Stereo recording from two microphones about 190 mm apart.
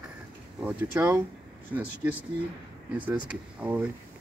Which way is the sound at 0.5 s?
5° right (ahead or behind).